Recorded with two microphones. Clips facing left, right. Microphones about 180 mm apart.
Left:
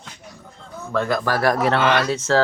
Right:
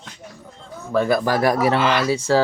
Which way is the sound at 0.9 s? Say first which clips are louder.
Right 3 dB; 10° right (ahead or behind).